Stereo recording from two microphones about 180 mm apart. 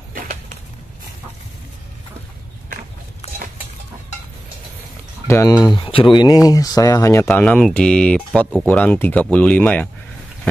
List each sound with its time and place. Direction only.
5.3 s speech: 20° left (ahead or behind)
5.8 s speech: 30° left (ahead or behind); by 9.8 s 10° left (ahead or behind)